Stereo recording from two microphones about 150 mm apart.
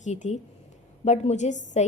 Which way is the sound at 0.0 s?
50° left (ahead or behind).